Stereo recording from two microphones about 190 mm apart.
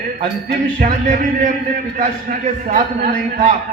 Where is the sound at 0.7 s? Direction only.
45° right (ahead or behind).